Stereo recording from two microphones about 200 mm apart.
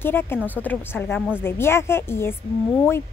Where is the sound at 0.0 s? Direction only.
10° left (ahead or behind).